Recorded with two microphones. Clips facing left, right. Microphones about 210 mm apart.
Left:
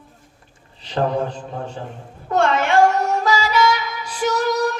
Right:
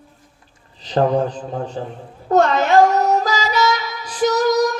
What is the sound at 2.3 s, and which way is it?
Music, 40° right (ahead or behind).